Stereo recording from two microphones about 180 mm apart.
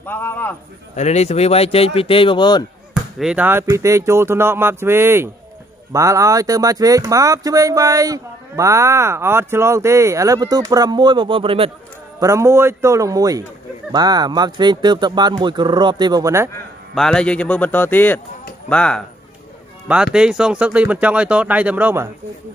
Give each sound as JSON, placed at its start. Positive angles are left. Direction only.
{"t": 0.0, "sound": "a man's voice", "side_deg": 10}
{"t": 0.9, "sound": "speech", "side_deg": 40}
{"t": 2.9, "sound": "speech", "side_deg": -5}
{"t": 12.2, "sound": "speech", "side_deg": -15}
{"t": 16.9, "sound": "a man's voice", "side_deg": 5}